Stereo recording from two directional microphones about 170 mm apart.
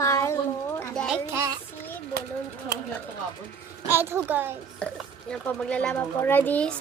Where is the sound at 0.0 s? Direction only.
15° left (ahead or behind).